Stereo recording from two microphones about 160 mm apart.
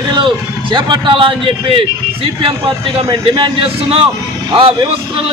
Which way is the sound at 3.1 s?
30° right (ahead or behind).